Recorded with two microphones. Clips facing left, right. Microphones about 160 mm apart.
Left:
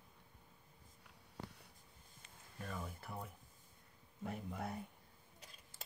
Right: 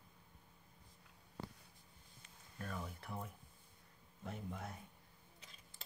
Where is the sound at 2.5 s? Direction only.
Centre (ahead or behind).